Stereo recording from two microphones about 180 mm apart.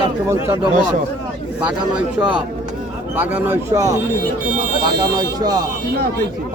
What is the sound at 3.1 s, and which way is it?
Speech, 10° right (ahead or behind).